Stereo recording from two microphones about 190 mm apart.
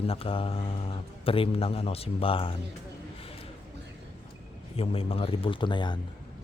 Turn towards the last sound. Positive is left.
turn(degrees=25)  # may be behind; listen again after turning